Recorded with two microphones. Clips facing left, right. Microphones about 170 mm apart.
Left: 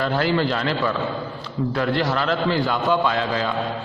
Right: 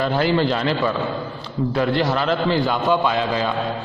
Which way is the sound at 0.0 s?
20° right (ahead or behind).